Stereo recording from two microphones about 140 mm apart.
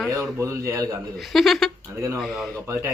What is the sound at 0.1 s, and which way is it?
Speech, 20° right (ahead or behind).